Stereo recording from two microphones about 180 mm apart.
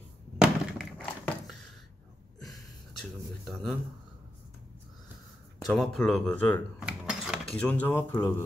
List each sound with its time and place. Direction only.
0.4 s thunk: 5° right (ahead or behind)
3.0 s a sound: centre (ahead or behind)
5.7 s speech: 5° left (ahead or behind)
6.9 s mechanisms: 5° right (ahead or behind)
7.5 s speech: 10° left (ahead or behind)